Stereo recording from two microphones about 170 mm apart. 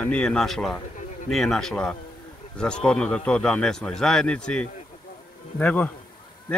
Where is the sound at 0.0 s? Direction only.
5° left (ahead or behind).